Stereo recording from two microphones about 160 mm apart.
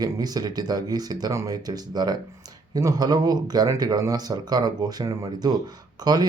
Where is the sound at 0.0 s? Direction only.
25° right (ahead or behind).